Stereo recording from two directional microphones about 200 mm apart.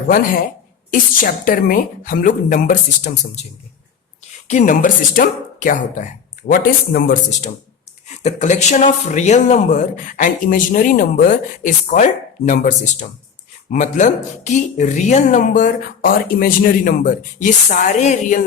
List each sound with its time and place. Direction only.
0.9 s a woman's voice: 45° left (ahead or behind)
4.4 s a woman's voice: 35° left (ahead or behind)